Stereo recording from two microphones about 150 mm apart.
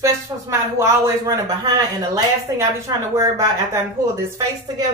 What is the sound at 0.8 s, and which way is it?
A woman's voice, 20° right (ahead or behind).